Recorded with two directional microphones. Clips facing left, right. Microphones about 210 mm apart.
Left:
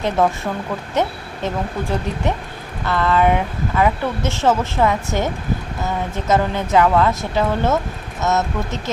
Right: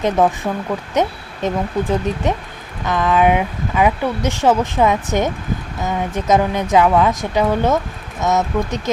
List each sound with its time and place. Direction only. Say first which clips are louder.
0.0 s speech: right 2 dB; 15° right (ahead or behind)